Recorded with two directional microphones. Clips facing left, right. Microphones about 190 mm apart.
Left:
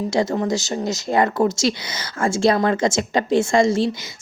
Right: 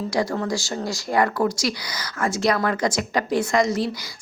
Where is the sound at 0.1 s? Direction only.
25° left (ahead or behind).